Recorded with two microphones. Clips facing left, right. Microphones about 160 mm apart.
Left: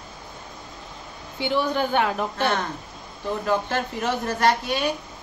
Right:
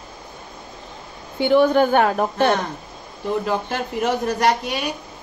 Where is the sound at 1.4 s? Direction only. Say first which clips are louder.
Right 8 dB; 50° right (ahead or behind).